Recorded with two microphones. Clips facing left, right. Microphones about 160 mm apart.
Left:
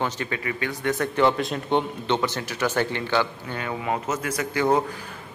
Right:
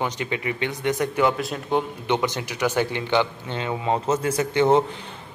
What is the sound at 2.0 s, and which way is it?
A man's voice, 15° right (ahead or behind).